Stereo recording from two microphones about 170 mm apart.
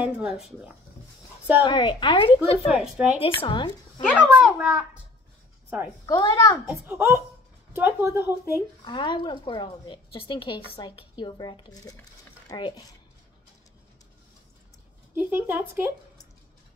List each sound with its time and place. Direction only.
0.0 s a child's voice: 5° right (ahead or behind)
1.6 s a woman's voice: 25° left (ahead or behind)
2.7 s a child's voice: 5° right (ahead or behind)
3.4 s a woman's voice: 30° left (ahead or behind)
4.1 s a child's voice: 5° right (ahead or behind)
6.0 s a woman's voice: 25° left (ahead or behind)
6.6 s speech: 5° right (ahead or behind)
8.8 s a woman's voice: 25° left (ahead or behind)
15.1 s speech: 10° right (ahead or behind)